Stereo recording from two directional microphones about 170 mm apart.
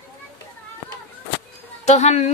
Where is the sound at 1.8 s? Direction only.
40° left (ahead or behind).